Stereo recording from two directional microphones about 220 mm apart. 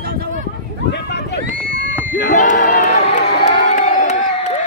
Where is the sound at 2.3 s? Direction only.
35° left (ahead or behind).